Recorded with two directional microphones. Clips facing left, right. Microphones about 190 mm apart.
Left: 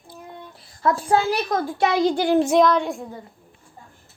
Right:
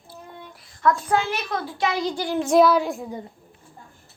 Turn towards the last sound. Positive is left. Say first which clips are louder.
# right 1 dB
turn(degrees=0)  # may be behind; listen again after turning